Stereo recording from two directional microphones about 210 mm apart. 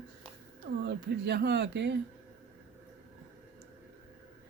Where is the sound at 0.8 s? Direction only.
50° right (ahead or behind).